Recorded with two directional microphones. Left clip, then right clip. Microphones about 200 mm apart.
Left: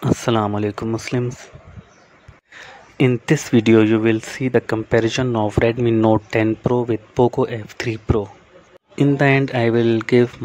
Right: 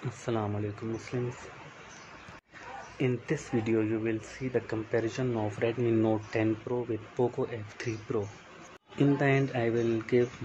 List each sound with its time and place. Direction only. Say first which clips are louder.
0.2 s speech: left 9 dB; 55° left (ahead or behind)
3.0 s speech: left 14 dB; 55° left (ahead or behind)